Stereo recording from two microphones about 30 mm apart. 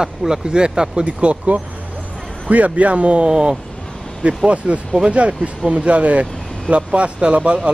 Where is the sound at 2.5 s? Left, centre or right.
Right.